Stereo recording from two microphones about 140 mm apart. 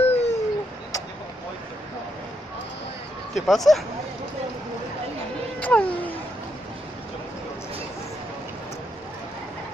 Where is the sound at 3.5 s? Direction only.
Centre (ahead or behind).